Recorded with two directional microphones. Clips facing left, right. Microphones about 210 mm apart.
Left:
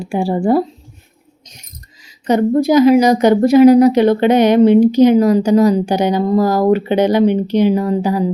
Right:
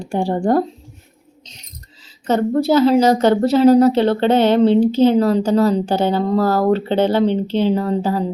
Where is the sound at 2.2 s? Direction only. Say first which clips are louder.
Left 3 dB; 15° left (ahead or behind).